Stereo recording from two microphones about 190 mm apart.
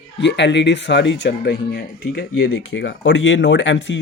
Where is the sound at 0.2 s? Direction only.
65° left (ahead or behind).